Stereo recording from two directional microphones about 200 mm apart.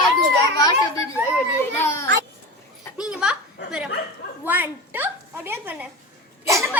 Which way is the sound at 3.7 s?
5° right (ahead or behind).